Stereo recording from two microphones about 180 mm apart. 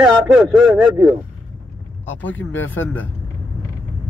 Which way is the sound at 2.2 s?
10° left (ahead or behind).